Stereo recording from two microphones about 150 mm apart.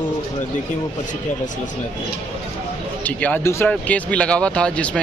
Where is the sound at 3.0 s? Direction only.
10° left (ahead or behind).